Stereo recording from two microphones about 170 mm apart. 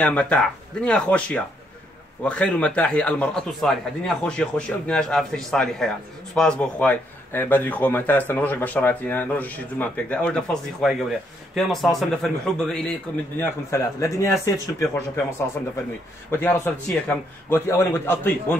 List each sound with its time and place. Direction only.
0.0 s a man's voice: 5° left (ahead or behind)
13.4 s a man's voice: 15° left (ahead or behind)
16.3 s a man's voice: 15° left (ahead or behind)